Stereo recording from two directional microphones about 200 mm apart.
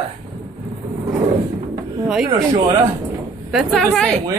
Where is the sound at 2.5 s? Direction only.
20° right (ahead or behind).